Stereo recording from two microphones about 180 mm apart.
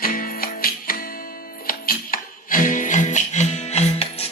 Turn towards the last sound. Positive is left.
turn(degrees=35)  # may be behind; listen again after turning